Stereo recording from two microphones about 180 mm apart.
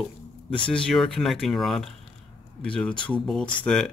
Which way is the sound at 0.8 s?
5° left (ahead or behind).